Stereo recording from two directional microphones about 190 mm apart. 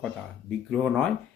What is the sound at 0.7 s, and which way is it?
Speech, 5° left (ahead or behind).